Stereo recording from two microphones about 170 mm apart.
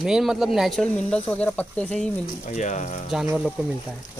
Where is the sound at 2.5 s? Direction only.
45° left (ahead or behind).